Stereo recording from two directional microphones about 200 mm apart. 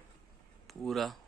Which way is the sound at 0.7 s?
Centre (ahead or behind).